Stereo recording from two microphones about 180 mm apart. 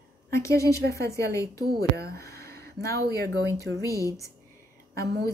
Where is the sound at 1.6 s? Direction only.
60° right (ahead or behind).